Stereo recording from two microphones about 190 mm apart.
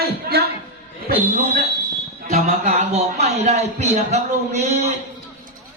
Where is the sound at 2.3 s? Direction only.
35° right (ahead or behind).